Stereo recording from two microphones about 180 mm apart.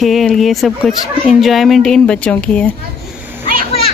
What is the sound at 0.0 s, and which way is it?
Speech, centre (ahead or behind).